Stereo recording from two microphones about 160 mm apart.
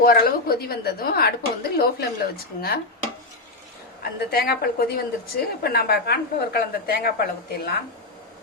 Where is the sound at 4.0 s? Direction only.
75° left (ahead or behind).